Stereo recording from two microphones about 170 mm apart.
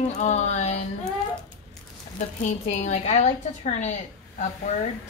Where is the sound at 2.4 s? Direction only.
45° left (ahead or behind).